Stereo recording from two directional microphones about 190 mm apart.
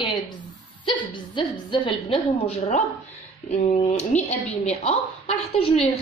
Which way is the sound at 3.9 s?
35° left (ahead or behind).